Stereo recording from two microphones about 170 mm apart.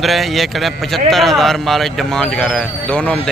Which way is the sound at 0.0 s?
Centre (ahead or behind).